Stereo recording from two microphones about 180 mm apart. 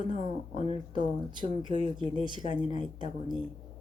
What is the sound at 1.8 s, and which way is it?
A woman's voice, 30° right (ahead or behind).